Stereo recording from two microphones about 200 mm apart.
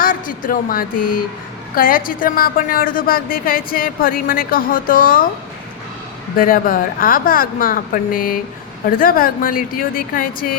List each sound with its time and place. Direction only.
0.0 s a woman's voice: 45° left (ahead or behind)
6.3 s a woman's voice: 45° left (ahead or behind)